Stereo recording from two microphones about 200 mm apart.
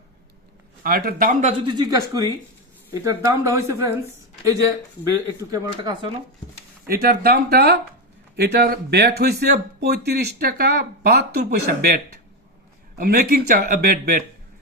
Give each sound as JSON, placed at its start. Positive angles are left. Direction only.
{"t": 0.8, "sound": "speech", "side_deg": -50}
{"t": 1.6, "sound": "speech", "side_deg": -20}
{"t": 2.9, "sound": "speech", "side_deg": -15}
{"t": 5.4, "sound": "speech", "side_deg": -20}
{"t": 6.8, "sound": "speech", "side_deg": -50}
{"t": 13.0, "sound": "speech", "side_deg": -45}